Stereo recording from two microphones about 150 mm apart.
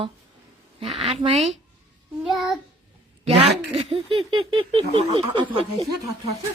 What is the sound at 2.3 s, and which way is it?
Child singing, centre (ahead or behind).